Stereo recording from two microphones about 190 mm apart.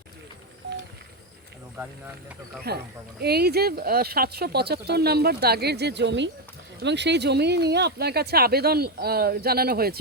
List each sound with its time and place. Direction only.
2.6 s speech: 60° right (ahead or behind)